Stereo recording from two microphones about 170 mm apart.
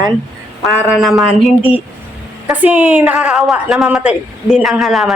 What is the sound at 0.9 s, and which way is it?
A woman's voice, centre (ahead or behind).